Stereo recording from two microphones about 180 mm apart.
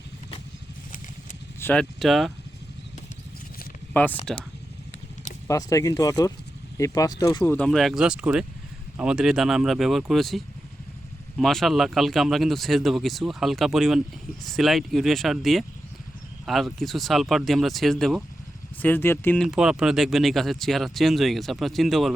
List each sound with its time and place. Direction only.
1.5 s speech: 10° left (ahead or behind)
3.9 s speech: 10° left (ahead or behind)
5.5 s speech: 20° left (ahead or behind)
7.7 s speech: centre (ahead or behind)
19.5 s speech: 5° right (ahead or behind)